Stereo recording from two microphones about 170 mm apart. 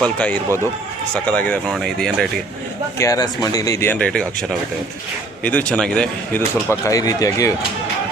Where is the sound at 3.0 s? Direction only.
20° left (ahead or behind); by 4.4 s 5° left (ahead or behind).